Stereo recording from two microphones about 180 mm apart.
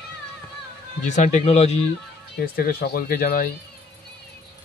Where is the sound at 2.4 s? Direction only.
55° left (ahead or behind).